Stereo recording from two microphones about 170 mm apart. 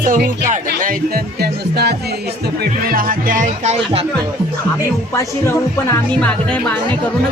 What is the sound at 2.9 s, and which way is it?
Speech, 55° right (ahead or behind).